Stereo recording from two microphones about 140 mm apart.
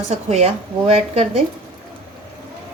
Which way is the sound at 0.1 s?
50° right (ahead or behind).